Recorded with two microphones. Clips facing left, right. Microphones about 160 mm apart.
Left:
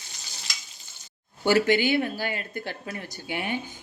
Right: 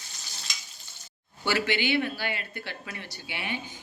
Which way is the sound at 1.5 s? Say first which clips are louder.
Left 6 dB; 45° left (ahead or behind).